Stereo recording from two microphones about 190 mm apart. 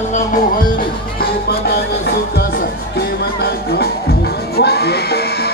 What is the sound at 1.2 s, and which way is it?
Music, 55° left (ahead or behind).